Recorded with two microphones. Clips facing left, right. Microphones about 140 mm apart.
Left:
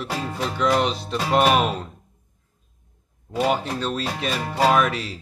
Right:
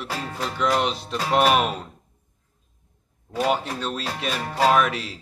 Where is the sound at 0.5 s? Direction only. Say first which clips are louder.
Left 2 dB; centre (ahead or behind).